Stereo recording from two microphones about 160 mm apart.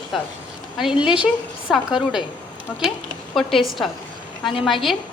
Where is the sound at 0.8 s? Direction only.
5° right (ahead or behind).